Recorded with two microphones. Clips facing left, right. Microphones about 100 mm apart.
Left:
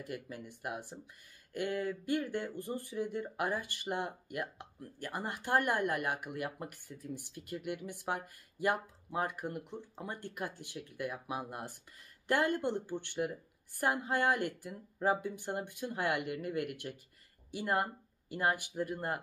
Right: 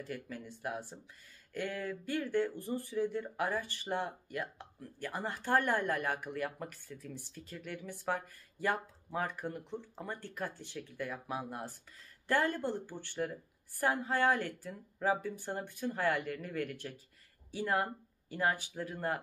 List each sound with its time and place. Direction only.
0.0 s speech: 15° left (ahead or behind)